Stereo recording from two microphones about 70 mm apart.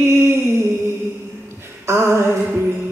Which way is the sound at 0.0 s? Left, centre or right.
Right.